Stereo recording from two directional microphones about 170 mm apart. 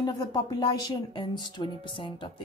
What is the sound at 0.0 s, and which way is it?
A woman's voice, 20° left (ahead or behind).